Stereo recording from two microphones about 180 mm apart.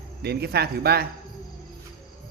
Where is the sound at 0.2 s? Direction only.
65° right (ahead or behind).